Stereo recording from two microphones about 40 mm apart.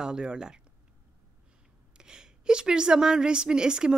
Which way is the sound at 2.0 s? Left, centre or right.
Centre.